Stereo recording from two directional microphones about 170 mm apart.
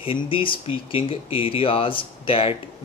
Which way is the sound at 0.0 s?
30° left (ahead or behind).